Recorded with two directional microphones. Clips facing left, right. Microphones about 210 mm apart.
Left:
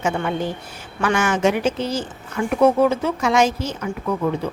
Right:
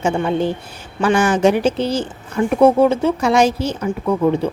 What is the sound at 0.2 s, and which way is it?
Speech, 25° right (ahead or behind).